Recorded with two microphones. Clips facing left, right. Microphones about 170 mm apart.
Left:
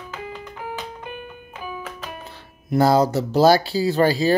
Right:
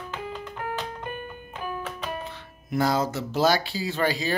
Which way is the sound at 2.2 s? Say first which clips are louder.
Left 5 dB; 35° left (ahead or behind).